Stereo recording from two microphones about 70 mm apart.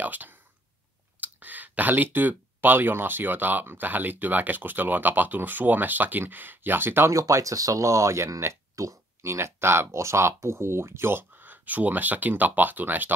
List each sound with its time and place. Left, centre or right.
0.0 s speech: right
7.1 s speech: right